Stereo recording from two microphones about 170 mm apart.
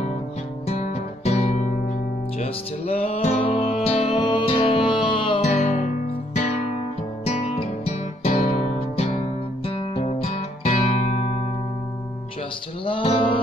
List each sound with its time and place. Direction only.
0.7 s guitar: 40° left (ahead or behind)
5.5 s guitar: 45° left (ahead or behind)
7.2 s music: 35° left (ahead or behind)
9.7 s music: 35° left (ahead or behind)
12.8 s music: 30° left (ahead or behind)